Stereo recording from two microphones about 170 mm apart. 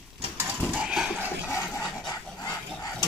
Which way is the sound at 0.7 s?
5° right (ahead or behind).